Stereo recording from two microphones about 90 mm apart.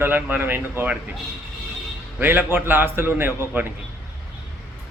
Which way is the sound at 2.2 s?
20° right (ahead or behind).